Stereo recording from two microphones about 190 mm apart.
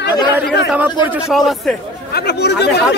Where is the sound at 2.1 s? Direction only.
60° left (ahead or behind).